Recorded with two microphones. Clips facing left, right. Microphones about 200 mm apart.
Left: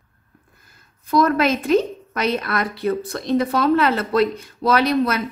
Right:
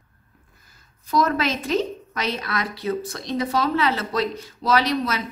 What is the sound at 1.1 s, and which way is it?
A woman's voice, 55° left (ahead or behind).